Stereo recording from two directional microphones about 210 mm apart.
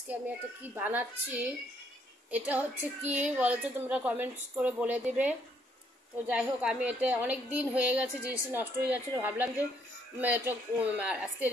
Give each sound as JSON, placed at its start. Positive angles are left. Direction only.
{"t": 0.7, "sound": "a woman's voice", "side_deg": -10}